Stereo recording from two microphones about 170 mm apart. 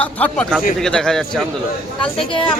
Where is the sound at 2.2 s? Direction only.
30° left (ahead or behind).